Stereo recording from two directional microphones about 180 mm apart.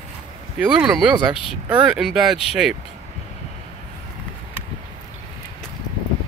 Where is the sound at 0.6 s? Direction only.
5° right (ahead or behind).